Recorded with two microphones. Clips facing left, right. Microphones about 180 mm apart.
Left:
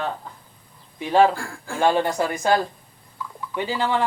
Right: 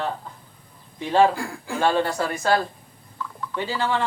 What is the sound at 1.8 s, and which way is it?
A man's voice, 15° left (ahead or behind).